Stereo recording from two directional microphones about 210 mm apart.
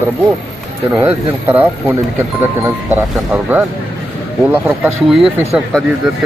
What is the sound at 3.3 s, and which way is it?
Speech, 5° right (ahead or behind).